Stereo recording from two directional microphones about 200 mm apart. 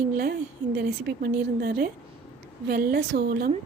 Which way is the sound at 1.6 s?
45° right (ahead or behind).